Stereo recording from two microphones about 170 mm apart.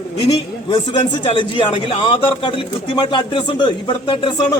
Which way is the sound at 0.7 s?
30° left (ahead or behind).